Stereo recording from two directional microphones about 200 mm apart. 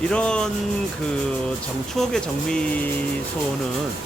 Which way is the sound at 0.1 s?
5° left (ahead or behind).